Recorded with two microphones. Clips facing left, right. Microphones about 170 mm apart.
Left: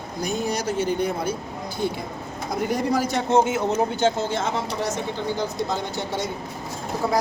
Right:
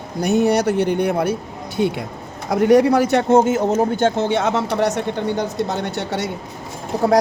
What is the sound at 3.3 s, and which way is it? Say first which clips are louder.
Speech: right 2 dB; 45° right (ahead or behind).